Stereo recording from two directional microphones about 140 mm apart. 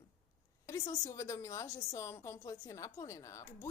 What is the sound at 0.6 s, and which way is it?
A woman's voice, 25° left (ahead or behind).